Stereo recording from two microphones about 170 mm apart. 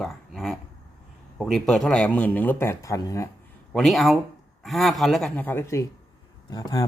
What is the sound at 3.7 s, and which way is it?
Speech, centre (ahead or behind).